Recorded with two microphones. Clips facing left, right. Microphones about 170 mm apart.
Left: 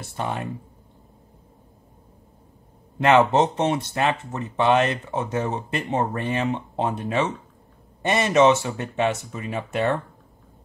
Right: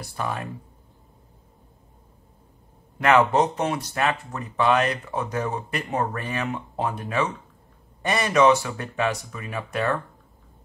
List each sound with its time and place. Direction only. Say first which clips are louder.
0.0 s speech: left 1 dB; 25° left (ahead or behind)
3.0 s speech: left 2 dB; 25° left (ahead or behind)